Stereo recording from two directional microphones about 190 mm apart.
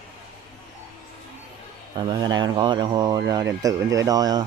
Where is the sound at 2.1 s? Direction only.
20° right (ahead or behind).